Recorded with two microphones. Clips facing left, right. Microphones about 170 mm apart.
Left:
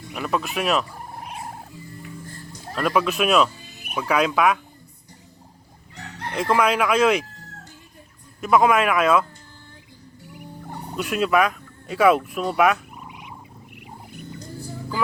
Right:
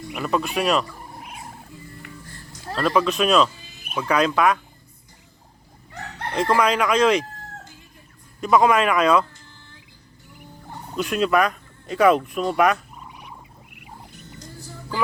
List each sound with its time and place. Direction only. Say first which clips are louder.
0.1 s speech: right 2 dB; centre (ahead or behind)
1.2 s music: left 4 dB; 35° left (ahead or behind)
2.7 s speech: right 1 dB; 10° left (ahead or behind)
6.3 s speech: even; 5° left (ahead or behind)
8.4 s speech: even; centre (ahead or behind)
10.9 s speech: even; 5° left (ahead or behind)
13.1 s a sound: even; 15° left (ahead or behind)